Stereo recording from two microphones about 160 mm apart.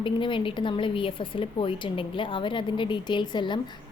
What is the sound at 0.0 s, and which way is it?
A woman's voice, 30° left (ahead or behind).